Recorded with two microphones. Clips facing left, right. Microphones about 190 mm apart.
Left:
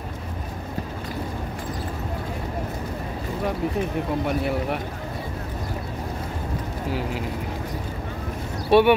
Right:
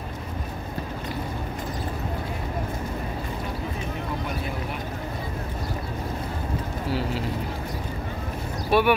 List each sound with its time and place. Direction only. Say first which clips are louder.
6.9 s speech: right 1 dB; 15° left (ahead or behind)
8.6 s speech: left 4 dB; 25° left (ahead or behind)